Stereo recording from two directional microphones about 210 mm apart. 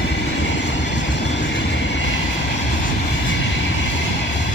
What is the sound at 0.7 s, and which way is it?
Train, 60° left (ahead or behind).